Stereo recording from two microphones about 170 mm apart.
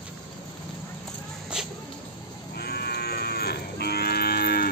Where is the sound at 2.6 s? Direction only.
65° left (ahead or behind).